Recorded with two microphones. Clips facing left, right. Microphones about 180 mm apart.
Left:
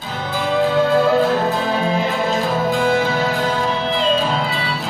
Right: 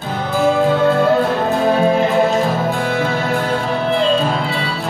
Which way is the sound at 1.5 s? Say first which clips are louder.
Right 5 dB; 55° right (ahead or behind).